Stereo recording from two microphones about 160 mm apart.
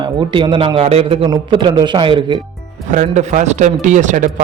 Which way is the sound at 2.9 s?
50° right (ahead or behind).